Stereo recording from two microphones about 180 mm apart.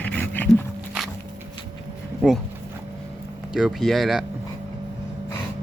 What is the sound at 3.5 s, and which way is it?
Speech, centre (ahead or behind).